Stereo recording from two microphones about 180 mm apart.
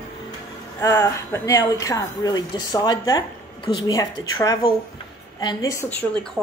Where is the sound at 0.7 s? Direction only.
15° left (ahead or behind).